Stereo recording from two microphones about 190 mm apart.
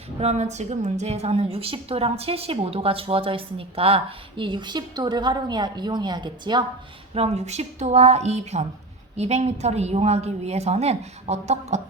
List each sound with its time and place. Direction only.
0.2 s a woman's voice: 35° right (ahead or behind)